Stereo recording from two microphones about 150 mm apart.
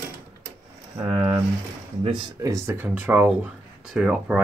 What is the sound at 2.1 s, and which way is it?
Speech, 20° right (ahead or behind).